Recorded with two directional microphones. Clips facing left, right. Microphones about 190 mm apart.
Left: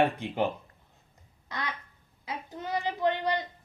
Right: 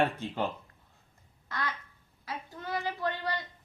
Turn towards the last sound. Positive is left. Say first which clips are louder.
# left 6 dB
turn(degrees=20)  # may be behind; listen again after turning